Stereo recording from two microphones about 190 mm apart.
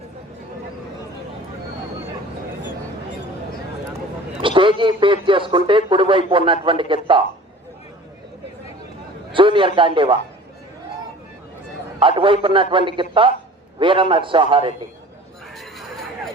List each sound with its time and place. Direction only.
4.4 s a man's voice: 25° right (ahead or behind)
9.3 s a man's voice: 25° right (ahead or behind)
11.9 s a man's voice: 25° right (ahead or behind)
15.5 s a sound: centre (ahead or behind)